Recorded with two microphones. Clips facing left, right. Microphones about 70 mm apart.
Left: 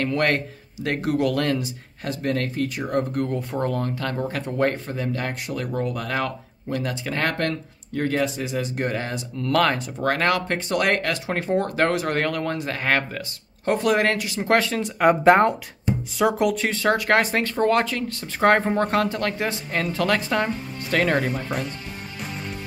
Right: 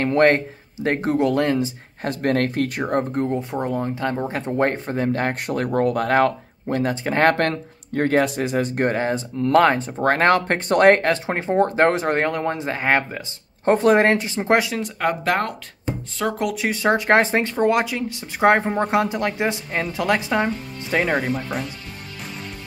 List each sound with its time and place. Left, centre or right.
0.0 s speech: right
2.0 s speech: right
3.0 s speech: right
9.0 s speech: right
15.0 s speech: centre
16.2 s speech: centre
16.7 s speech: right; by 21.7 s centre